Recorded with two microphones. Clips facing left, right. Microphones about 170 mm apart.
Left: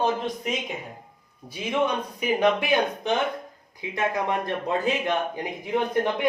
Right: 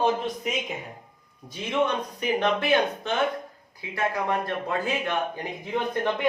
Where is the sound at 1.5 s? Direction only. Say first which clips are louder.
Even; 10° left (ahead or behind).